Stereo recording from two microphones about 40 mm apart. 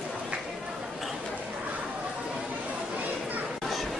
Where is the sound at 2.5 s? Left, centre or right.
Right.